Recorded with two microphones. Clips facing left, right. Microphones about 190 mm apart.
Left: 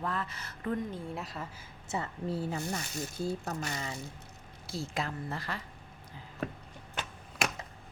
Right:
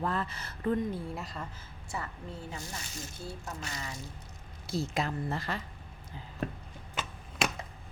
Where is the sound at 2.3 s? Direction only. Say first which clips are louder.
Left 8 dB; 35° left (ahead or behind).